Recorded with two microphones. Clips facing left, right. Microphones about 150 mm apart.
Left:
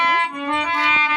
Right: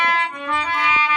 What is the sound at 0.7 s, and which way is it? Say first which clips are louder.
Music: right 1 dB; 35° left (ahead or behind).